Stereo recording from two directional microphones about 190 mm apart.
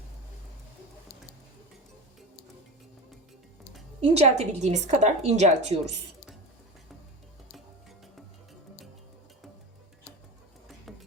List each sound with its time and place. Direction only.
4.0 s a woman's voice: 35° right (ahead or behind)